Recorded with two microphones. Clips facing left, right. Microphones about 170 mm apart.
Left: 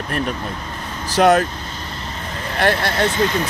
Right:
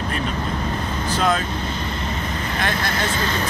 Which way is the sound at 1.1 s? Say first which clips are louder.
Left 8 dB; 70° left (ahead or behind).